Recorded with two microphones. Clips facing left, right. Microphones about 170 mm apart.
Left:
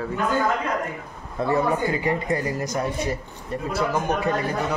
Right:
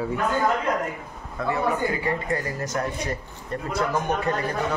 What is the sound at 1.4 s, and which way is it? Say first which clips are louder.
Speech: left 3 dB; 30° left (ahead or behind).